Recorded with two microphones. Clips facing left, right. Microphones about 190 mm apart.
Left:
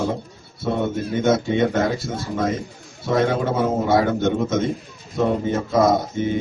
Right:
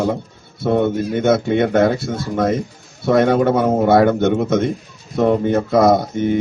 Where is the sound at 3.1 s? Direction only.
65° right (ahead or behind).